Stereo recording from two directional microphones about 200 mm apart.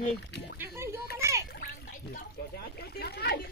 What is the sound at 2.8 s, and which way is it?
Speech, 50° left (ahead or behind).